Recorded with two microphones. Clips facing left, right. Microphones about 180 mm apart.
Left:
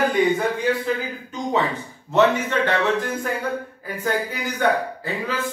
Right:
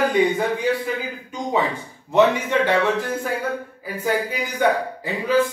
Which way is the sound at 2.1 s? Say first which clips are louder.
Right 1 dB; 10° right (ahead or behind).